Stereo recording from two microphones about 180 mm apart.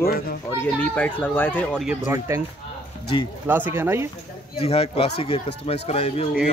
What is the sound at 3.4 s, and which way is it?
Speech, 10° right (ahead or behind).